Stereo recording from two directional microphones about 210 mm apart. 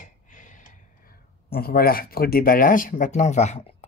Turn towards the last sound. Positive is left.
turn(degrees=30)  # may be behind; listen again after turning